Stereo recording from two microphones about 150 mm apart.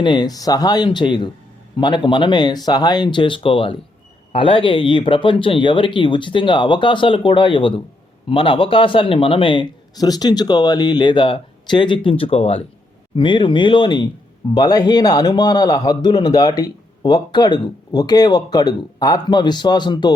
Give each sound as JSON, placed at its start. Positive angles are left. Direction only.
{"t": 0.0, "sound": "a man's voice", "side_deg": 30}